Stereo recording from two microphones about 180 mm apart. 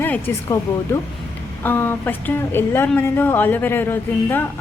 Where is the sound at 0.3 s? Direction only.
10° left (ahead or behind).